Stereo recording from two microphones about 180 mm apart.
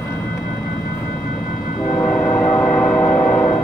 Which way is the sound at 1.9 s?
15° left (ahead or behind).